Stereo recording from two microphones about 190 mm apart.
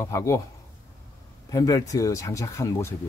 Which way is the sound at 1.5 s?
20° left (ahead or behind).